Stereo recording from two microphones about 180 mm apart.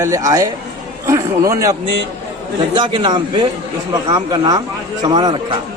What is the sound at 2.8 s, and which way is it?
A man's voice, 25° right (ahead or behind).